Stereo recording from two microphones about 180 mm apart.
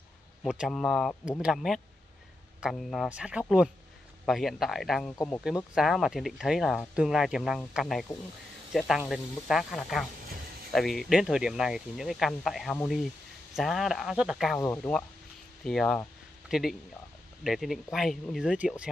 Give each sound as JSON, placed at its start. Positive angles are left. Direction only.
{"t": 0.4, "sound": "speech", "side_deg": 0}
{"t": 5.1, "sound": "speech", "side_deg": 20}
{"t": 5.8, "sound": "speech", "side_deg": 0}
{"t": 14.6, "sound": "speech", "side_deg": 15}